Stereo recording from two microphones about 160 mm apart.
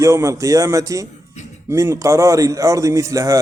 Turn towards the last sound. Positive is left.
turn(degrees=-20)  # may be behind; listen again after turning